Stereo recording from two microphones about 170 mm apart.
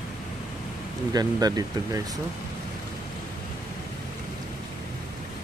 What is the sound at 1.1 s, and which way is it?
Speech, 20° right (ahead or behind).